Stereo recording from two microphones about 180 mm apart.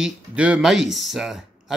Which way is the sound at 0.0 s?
5° right (ahead or behind).